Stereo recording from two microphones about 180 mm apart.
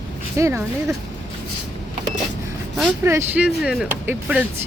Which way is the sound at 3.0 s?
10° right (ahead or behind).